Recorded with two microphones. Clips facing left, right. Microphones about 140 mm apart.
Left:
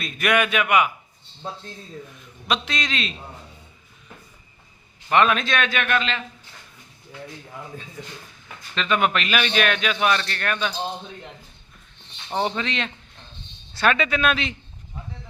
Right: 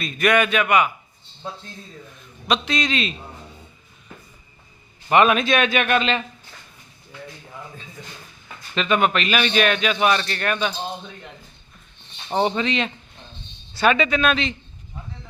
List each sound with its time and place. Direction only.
0.0 s a man's voice: 5° left (ahead or behind)
2.5 s a man's voice: centre (ahead or behind)
5.0 s a man's voice: 10° right (ahead or behind)
8.7 s a man's voice: 5° right (ahead or behind)
12.3 s a man's voice: 5° right (ahead or behind)